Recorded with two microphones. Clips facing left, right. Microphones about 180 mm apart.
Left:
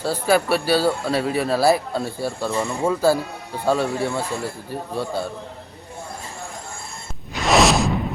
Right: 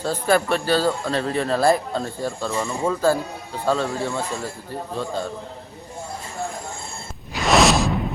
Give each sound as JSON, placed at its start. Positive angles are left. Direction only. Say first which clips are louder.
{"t": 0.0, "sound": "speech", "louder": "left 1 dB", "side_deg": 5}
{"t": 7.3, "sound": "whoosh", "louder": "even", "side_deg": 0}